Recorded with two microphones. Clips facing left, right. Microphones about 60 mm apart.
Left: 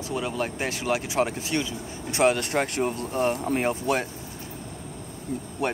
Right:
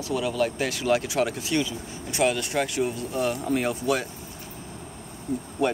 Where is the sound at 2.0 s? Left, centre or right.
Left.